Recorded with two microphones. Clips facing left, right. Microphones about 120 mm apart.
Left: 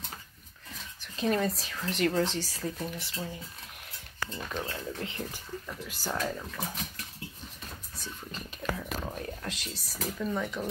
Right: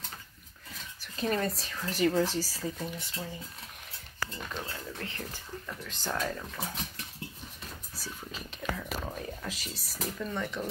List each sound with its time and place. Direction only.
1.0 s speech: centre (ahead or behind)
4.7 s speech: 20° left (ahead or behind); by 6.4 s 5° left (ahead or behind)
7.9 s whispering: 5° right (ahead or behind)
10.0 s speech: 5° left (ahead or behind)